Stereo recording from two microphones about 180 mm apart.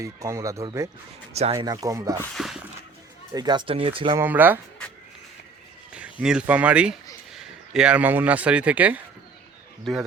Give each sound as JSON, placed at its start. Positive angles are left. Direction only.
{"t": 0.0, "sound": "speech", "side_deg": -15}
{"t": 1.3, "sound": "speech", "side_deg": -35}
{"t": 1.5, "sound": "speech", "side_deg": -20}
{"t": 2.3, "sound": "a sound", "side_deg": 0}
{"t": 3.3, "sound": "speech", "side_deg": -25}
{"t": 4.2, "sound": "speech", "side_deg": -10}
{"t": 5.9, "sound": "a man's voice", "side_deg": -5}